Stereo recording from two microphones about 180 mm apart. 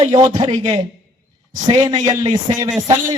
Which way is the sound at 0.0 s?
30° right (ahead or behind).